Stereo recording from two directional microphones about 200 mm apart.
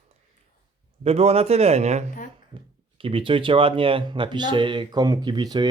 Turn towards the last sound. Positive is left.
turn(degrees=-20)  # may be behind; listen again after turning